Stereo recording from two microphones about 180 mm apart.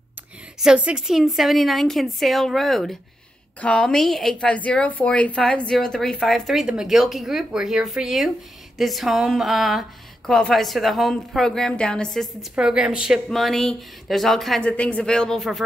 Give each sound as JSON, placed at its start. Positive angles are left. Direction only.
{"t": 0.6, "sound": "speech", "side_deg": -5}